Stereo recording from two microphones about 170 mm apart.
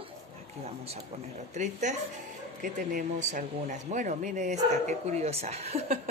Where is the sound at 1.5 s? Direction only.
45° right (ahead or behind).